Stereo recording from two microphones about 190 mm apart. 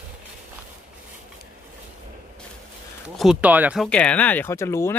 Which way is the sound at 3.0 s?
Centre (ahead or behind).